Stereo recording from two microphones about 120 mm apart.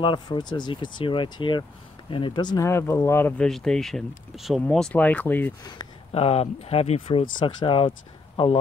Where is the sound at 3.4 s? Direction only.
5° left (ahead or behind).